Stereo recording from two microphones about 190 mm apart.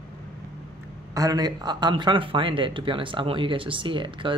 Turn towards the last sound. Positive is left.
turn(degrees=-25)  # may be behind; listen again after turning